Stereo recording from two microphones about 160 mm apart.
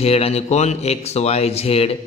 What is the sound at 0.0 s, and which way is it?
A man's voice, 40° left (ahead or behind).